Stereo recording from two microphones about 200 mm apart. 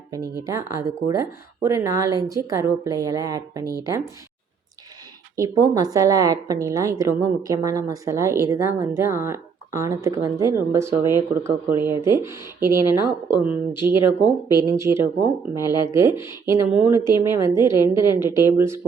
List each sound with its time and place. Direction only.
0.4 s a woman's voice: 15° right (ahead or behind)
5.4 s a woman's voice: 20° right (ahead or behind)